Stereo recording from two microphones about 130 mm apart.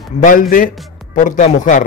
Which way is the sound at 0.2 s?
90° left.